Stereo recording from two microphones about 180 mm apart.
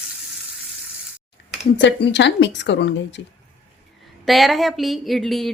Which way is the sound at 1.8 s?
80° left.